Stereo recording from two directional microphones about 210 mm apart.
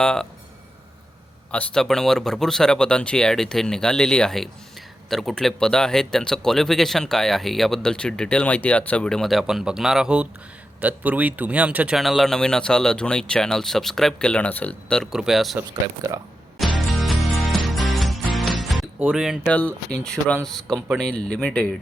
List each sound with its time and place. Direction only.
0.0 s speech: 5° left (ahead or behind)
1.5 s speech: 5° left (ahead or behind)
15.7 s speech: 15° right (ahead or behind)
16.7 s music: centre (ahead or behind)
20.1 s speech: 5° left (ahead or behind)
20.7 s speech: 10° right (ahead or behind)
21.0 s speech: 5° left (ahead or behind)